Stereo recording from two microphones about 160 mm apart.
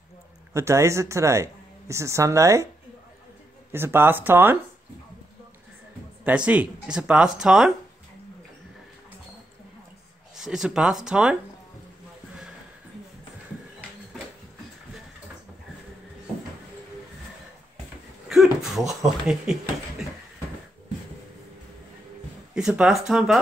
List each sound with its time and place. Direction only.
0.5 s speech: 20° right (ahead or behind)
3.7 s speech: 15° right (ahead or behind)
6.2 s speech: 10° right (ahead or behind)
10.3 s speech: 5° right (ahead or behind)
18.3 s speech: centre (ahead or behind)
22.5 s speech: 5° right (ahead or behind)